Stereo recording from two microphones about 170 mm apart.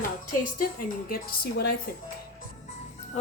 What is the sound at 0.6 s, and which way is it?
A woman's voice, 55° left (ahead or behind).